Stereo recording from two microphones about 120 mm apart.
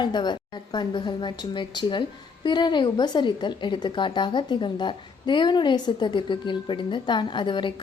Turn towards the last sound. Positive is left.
turn(degrees=40)  # may be behind; listen again after turning